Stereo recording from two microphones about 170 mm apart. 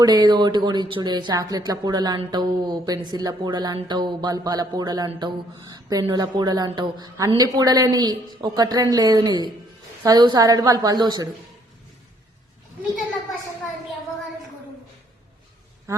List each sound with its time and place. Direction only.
0.0 s speech: 25° right (ahead or behind)
15.9 s a man's voice: 20° right (ahead or behind)